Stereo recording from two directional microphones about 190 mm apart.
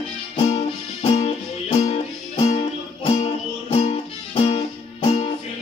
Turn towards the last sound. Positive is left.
turn(degrees=30)  # may be behind; listen again after turning